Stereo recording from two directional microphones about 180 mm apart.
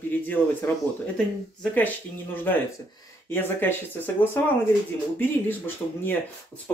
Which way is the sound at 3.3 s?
10° left (ahead or behind).